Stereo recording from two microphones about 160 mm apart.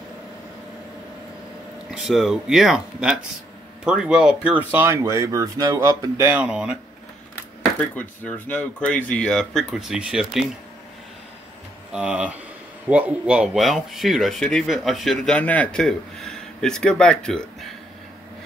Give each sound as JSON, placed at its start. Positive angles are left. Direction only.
{"t": 1.9, "sound": "speech", "side_deg": -5}
{"t": 7.9, "sound": "speech", "side_deg": 10}
{"t": 11.9, "sound": "speech", "side_deg": -5}